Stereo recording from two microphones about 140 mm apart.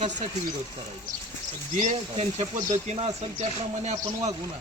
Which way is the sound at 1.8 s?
55° right (ahead or behind).